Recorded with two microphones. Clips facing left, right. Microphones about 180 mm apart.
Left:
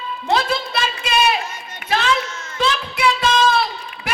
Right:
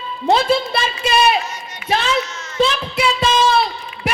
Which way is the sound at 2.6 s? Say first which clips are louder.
Right 3 dB; 25° right (ahead or behind).